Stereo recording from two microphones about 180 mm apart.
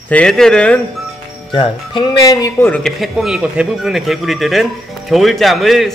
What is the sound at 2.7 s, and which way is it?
A man's voice, centre (ahead or behind).